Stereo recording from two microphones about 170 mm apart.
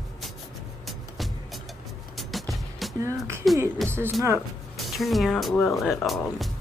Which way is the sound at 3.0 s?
15° right (ahead or behind).